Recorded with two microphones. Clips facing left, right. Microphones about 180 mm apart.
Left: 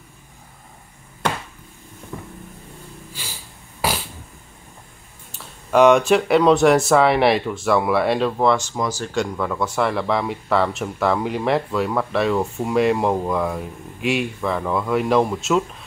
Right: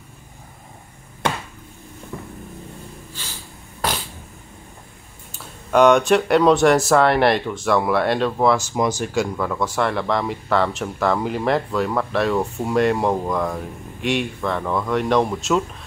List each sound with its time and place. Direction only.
3.2 s snort: 10° left (ahead or behind)
3.8 s fart: 5° left (ahead or behind)
5.3 s speech: centre (ahead or behind)
8.7 s speech: 15° right (ahead or behind)
9.1 s speech: 5° right (ahead or behind)